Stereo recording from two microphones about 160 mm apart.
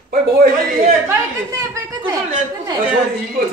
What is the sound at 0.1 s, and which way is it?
Speech, 60° right (ahead or behind).